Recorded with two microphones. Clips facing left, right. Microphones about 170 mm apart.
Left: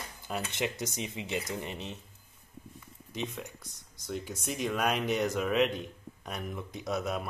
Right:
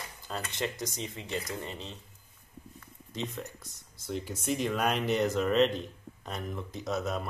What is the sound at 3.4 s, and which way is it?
Speech, 5° left (ahead or behind).